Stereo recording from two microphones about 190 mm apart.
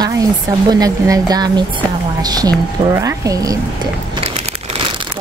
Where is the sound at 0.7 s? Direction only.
20° right (ahead or behind).